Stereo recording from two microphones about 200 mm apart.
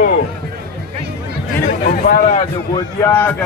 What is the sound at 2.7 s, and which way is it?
Speech, 10° left (ahead or behind).